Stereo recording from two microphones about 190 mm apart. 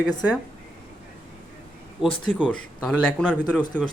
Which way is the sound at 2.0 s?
30° left (ahead or behind).